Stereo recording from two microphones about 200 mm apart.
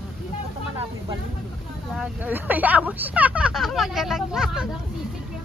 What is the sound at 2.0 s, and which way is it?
Speech, 5° right (ahead or behind).